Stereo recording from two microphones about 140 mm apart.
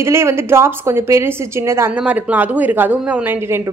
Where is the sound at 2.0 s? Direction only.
10° right (ahead or behind).